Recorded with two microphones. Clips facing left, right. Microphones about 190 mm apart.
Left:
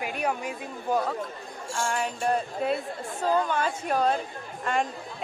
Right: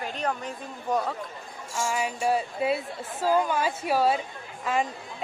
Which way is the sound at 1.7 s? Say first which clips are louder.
Right 1 dB; 5° right (ahead or behind).